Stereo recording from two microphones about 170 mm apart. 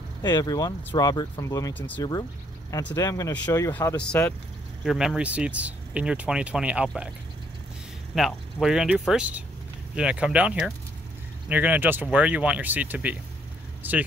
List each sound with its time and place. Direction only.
0.2 s speech: 25° left (ahead or behind)
2.0 s speech: 25° left (ahead or behind)
3.9 s speech: 5° left (ahead or behind)
4.8 s speech: 5° right (ahead or behind)
8.1 s speech: centre (ahead or behind)